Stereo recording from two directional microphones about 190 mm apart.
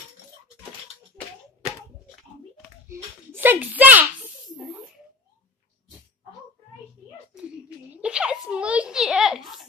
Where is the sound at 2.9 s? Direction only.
10° right (ahead or behind).